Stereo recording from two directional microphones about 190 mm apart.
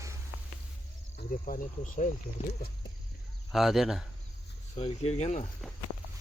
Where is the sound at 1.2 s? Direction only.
45° left (ahead or behind).